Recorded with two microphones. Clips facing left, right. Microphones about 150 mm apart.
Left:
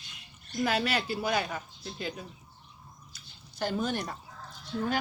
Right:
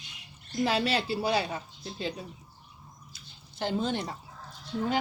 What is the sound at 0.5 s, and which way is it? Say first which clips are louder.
Speech: right 2 dB; 30° right (ahead or behind).